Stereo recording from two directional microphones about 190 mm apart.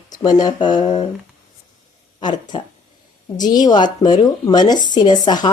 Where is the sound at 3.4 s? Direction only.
20° left (ahead or behind).